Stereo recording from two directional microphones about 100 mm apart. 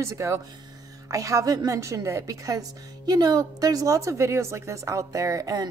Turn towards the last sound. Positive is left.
turn(degrees=-35)  # may be behind; listen again after turning